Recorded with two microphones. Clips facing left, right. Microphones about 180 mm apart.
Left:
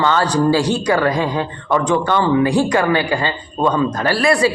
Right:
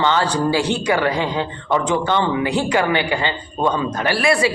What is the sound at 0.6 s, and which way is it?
Speech, 35° left (ahead or behind).